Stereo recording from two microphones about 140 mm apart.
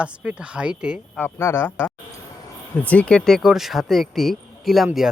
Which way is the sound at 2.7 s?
10° left (ahead or behind).